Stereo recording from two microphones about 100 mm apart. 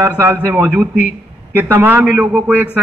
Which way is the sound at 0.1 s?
20° right (ahead or behind).